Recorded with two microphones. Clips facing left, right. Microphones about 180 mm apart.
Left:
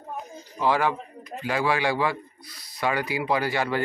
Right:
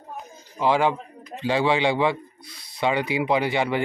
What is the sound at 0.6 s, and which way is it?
Speech, 20° right (ahead or behind).